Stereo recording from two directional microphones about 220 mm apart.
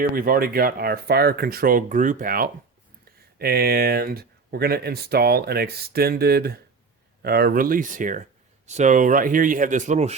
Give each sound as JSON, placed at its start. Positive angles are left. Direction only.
{"t": 0.0, "sound": "speech", "side_deg": -40}